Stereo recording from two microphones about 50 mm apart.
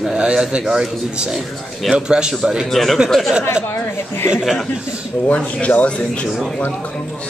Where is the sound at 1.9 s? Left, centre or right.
Centre.